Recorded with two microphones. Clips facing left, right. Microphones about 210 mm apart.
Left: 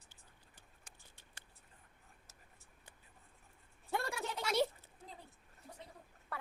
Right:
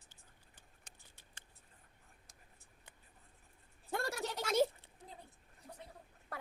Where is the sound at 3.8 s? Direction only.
40° right (ahead or behind).